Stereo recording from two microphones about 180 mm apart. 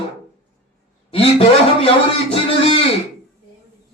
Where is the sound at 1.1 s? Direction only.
30° left (ahead or behind).